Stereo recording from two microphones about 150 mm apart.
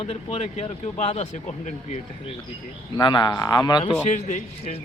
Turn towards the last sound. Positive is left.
turn(degrees=50)  # may be behind; listen again after turning